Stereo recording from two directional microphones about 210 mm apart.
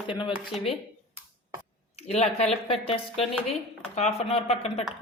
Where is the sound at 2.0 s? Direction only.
30° left (ahead or behind).